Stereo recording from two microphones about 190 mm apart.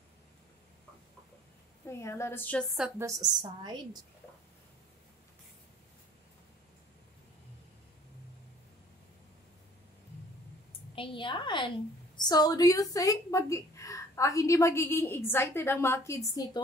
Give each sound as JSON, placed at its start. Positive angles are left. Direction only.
{"t": 1.9, "sound": "a woman's voice", "side_deg": 15}
{"t": 3.0, "sound": "a woman's voice", "side_deg": -20}
{"t": 11.0, "sound": "a woman's voice", "side_deg": 25}